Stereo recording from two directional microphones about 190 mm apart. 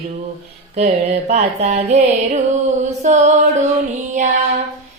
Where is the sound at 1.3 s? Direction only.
35° right (ahead or behind).